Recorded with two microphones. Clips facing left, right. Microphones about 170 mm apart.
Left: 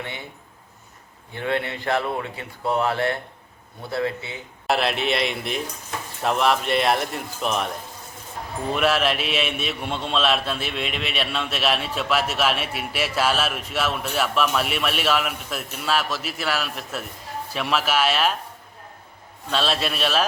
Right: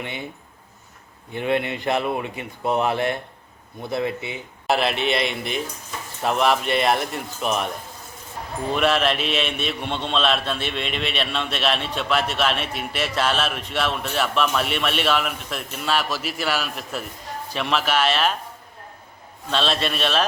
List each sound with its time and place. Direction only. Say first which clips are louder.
1.3 s speech: right 3 dB; 20° right (ahead or behind)
4.6 s a man's voice: right 1 dB; centre (ahead or behind)
8.7 s a man's voice: right 1 dB; 5° left (ahead or behind)
19.5 s a man's voice: right 1 dB; 5° left (ahead or behind)